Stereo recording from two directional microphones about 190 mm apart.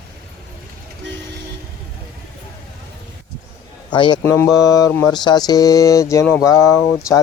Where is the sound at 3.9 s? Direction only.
25° left (ahead or behind).